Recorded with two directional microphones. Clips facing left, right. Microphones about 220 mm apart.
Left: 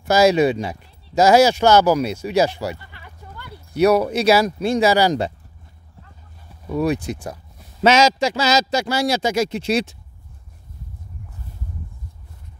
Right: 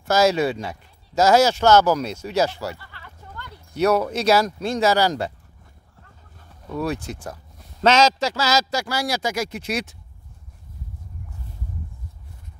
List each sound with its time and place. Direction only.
0.0 s speech: 15° left (ahead or behind)
6.7 s a man's voice: 15° left (ahead or behind)